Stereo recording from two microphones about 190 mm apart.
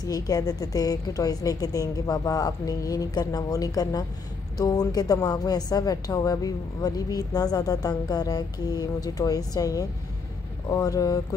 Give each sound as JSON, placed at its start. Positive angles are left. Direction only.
{"t": 0.0, "sound": "a woman's voice", "side_deg": 20}